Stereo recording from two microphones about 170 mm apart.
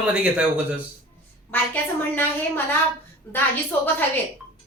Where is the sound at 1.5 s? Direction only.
10° left (ahead or behind).